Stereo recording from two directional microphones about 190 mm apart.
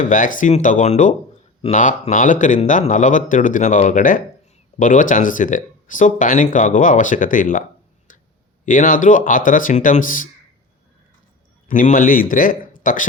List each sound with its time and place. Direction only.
0.0 s speech: 45° left (ahead or behind)
8.6 s speech: 45° left (ahead or behind)
11.7 s speech: 45° left (ahead or behind)